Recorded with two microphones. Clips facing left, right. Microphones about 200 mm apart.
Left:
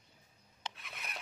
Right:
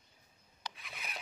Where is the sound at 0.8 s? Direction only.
Centre (ahead or behind).